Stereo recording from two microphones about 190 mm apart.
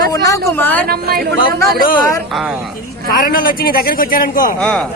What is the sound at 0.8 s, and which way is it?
Speech, 55° right (ahead or behind).